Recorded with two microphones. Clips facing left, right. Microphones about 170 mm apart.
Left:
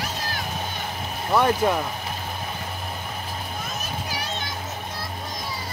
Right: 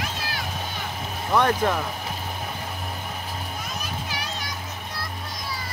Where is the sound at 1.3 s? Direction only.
10° left (ahead or behind).